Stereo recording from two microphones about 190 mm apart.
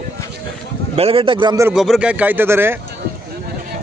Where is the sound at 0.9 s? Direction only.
30° right (ahead or behind).